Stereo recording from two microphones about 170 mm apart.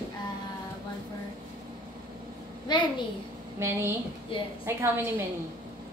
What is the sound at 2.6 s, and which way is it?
Speech, 25° left (ahead or behind).